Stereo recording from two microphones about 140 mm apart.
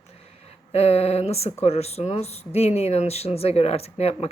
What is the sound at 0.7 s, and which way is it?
Speech, 50° left (ahead or behind).